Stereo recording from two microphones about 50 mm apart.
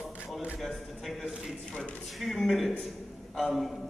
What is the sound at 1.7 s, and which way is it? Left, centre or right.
Speech, left.